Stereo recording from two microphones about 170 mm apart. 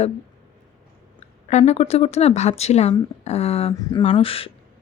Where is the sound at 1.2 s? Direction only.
40° left (ahead or behind).